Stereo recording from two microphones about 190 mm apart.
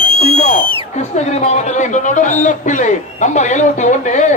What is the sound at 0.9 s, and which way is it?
A man's voice, 35° left (ahead or behind).